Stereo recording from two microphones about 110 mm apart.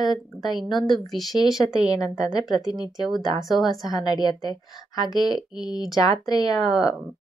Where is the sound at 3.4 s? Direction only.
Centre (ahead or behind).